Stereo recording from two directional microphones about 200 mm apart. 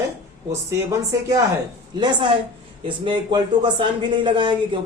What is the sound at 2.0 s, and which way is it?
Speech, 20° right (ahead or behind).